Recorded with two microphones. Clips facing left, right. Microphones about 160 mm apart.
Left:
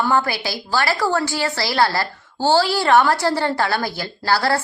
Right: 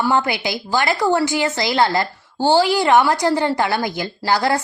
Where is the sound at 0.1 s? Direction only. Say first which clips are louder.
Right 1 dB; 20° right (ahead or behind).